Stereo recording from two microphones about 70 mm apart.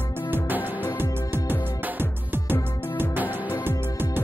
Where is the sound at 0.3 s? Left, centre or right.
Right.